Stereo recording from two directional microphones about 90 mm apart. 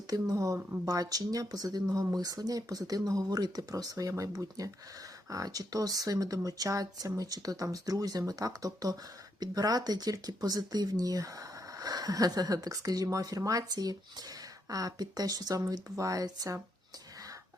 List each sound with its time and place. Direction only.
0.1 s speech: 40° right (ahead or behind)